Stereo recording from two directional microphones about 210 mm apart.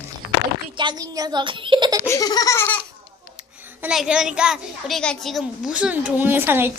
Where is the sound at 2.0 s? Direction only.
15° left (ahead or behind).